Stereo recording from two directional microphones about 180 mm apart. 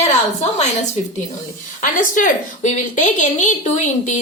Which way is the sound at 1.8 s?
50° left (ahead or behind).